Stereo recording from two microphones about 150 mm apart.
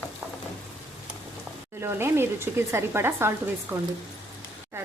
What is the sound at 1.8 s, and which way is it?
Speech, 15° right (ahead or behind).